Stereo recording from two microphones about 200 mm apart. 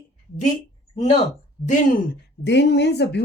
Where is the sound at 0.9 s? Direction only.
30° left (ahead or behind).